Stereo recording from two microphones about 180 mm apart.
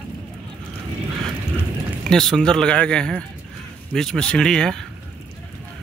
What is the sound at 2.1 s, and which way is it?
Speech, 5° left (ahead or behind).